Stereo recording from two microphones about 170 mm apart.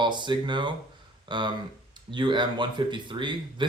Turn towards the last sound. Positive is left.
turn(degrees=-30)  # may be behind; listen again after turning